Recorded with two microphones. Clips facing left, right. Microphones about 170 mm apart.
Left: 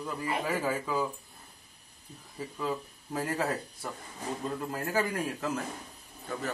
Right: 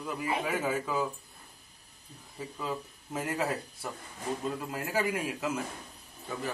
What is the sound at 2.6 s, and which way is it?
Speech, centre (ahead or behind).